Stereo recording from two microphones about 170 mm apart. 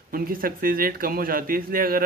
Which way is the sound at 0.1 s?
55° right (ahead or behind).